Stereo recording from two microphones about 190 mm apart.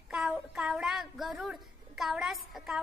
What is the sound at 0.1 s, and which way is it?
A woman's voice, 5° right (ahead or behind).